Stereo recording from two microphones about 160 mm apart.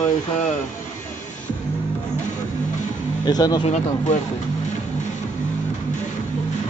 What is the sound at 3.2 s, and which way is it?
Speech, 25° left (ahead or behind).